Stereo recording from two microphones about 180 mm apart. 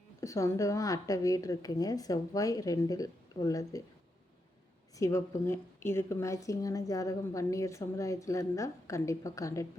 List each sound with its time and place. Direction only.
0.2 s speech: 15° left (ahead or behind)
4.9 s a woman's voice: 15° left (ahead or behind)